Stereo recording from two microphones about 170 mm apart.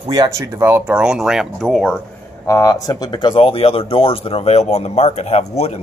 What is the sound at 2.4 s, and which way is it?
Speech, 20° left (ahead or behind).